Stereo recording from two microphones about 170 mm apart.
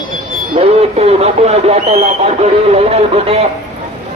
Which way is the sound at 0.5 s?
35° right (ahead or behind).